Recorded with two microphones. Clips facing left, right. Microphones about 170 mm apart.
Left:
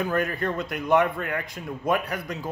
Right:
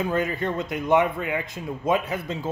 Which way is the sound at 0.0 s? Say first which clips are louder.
Right 1 dB; 20° right (ahead or behind).